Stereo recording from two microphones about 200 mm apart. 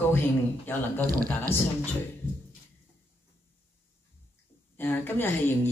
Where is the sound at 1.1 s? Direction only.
45° right (ahead or behind).